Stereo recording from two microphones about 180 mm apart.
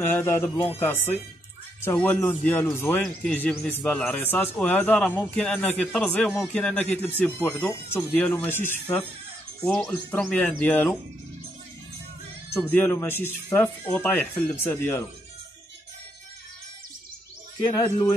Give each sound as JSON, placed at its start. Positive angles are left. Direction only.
{"t": 0.0, "sound": "speech", "side_deg": 15}
{"t": 12.6, "sound": "speech", "side_deg": 10}
{"t": 17.6, "sound": "speech", "side_deg": 20}